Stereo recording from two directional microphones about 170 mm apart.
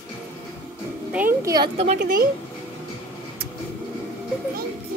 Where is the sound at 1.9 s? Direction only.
60° right (ahead or behind).